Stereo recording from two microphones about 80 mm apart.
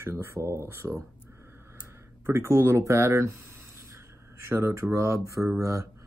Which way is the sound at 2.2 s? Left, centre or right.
Right.